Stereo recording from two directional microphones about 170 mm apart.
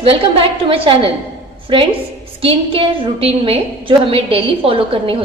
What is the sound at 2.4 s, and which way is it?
A woman's voice, 35° right (ahead or behind).